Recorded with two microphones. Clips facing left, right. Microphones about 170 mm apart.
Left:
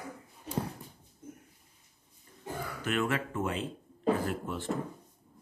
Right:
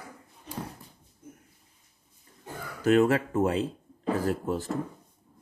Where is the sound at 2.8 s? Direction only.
40° right (ahead or behind).